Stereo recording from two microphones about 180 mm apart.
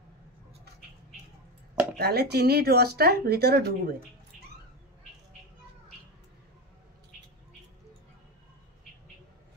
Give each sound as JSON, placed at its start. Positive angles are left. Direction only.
{"t": 2.0, "sound": "speech", "side_deg": -60}